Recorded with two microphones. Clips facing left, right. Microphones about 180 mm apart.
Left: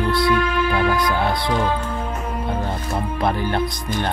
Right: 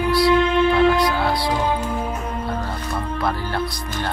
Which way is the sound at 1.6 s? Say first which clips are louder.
Even; 15° right (ahead or behind).